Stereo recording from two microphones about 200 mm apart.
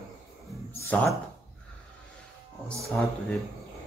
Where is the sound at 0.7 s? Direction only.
10° left (ahead or behind).